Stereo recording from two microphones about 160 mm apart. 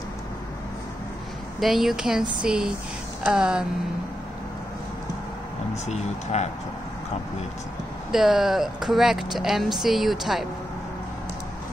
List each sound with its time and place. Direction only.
1.6 s speech: centre (ahead or behind)
5.9 s speech: 45° left (ahead or behind)
8.1 s speech: centre (ahead or behind)